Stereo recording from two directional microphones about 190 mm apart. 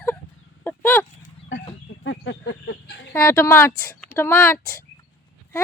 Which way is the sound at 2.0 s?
85° left.